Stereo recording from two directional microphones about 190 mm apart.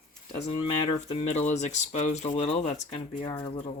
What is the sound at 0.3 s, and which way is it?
Speech, 30° left (ahead or behind).